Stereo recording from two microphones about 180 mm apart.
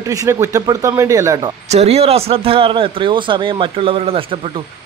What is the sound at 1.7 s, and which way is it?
Speech, 35° right (ahead or behind).